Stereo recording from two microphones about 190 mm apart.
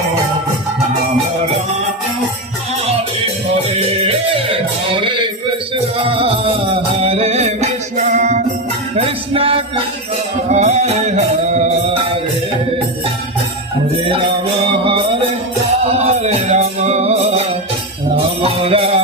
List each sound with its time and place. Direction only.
4.0 s music: 30° right (ahead or behind)
14.0 s music: 30° right (ahead or behind)
15.8 s music: 35° right (ahead or behind)
18.4 s music: 30° right (ahead or behind)